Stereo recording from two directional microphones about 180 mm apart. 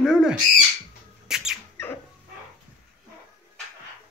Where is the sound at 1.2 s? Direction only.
5° right (ahead or behind).